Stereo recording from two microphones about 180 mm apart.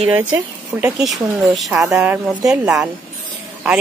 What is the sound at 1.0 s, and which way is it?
Speech, centre (ahead or behind).